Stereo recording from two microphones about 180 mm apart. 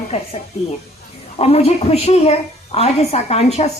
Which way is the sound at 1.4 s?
35° left (ahead or behind).